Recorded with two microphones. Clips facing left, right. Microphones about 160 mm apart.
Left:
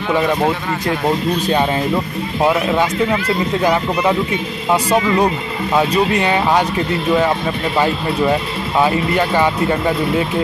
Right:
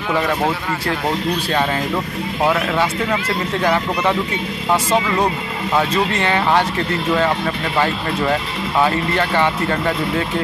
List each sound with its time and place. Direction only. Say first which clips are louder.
2.4 s speech: left 3 dB; 15° left (ahead or behind)
5.8 s speech: left 3 dB; 15° left (ahead or behind)
8.8 s speech: left 4 dB; 15° left (ahead or behind)